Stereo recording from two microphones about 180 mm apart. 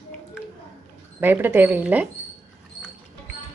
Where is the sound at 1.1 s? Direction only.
10° right (ahead or behind).